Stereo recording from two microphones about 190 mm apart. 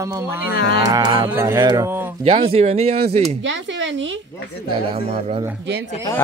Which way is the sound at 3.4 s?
75° right (ahead or behind).